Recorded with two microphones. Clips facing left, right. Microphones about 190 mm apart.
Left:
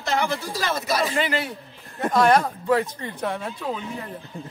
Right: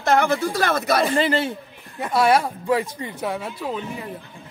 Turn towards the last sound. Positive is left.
turn(degrees=-5)  # may be behind; listen again after turning